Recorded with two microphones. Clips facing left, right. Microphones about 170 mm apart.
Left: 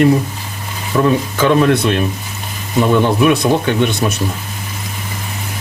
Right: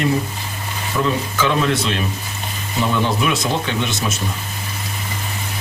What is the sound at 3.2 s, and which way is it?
Speech, 55° left (ahead or behind).